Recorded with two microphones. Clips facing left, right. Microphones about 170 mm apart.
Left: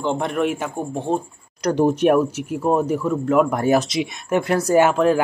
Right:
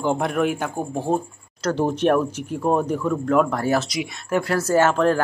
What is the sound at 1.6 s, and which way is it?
Speech, 15° left (ahead or behind).